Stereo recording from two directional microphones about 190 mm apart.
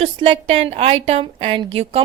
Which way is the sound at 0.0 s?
30° right (ahead or behind).